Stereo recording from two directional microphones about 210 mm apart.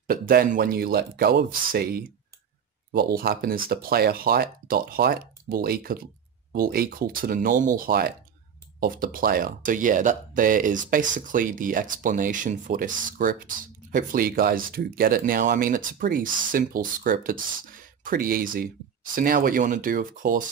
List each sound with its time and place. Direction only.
0.0 s speech: 45° right (ahead or behind)